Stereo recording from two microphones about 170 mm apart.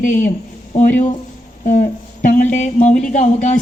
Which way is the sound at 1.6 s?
45° left (ahead or behind).